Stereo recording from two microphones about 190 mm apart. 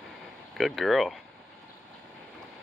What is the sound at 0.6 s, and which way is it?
Speech, centre (ahead or behind).